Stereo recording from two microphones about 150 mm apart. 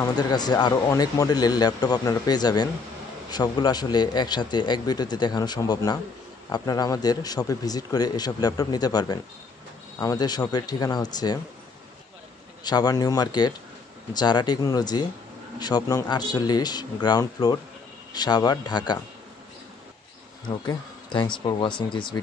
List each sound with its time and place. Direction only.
0.0 s speech: 25° left (ahead or behind)
12.6 s speech: 25° left (ahead or behind)
20.4 s speech: 30° left (ahead or behind)